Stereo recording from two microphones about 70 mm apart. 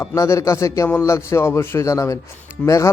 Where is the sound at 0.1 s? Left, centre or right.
Left.